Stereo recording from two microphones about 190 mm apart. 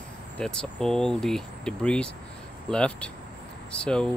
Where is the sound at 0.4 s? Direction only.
5° left (ahead or behind).